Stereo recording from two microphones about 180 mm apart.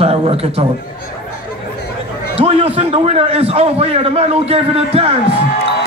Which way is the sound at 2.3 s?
35° right (ahead or behind).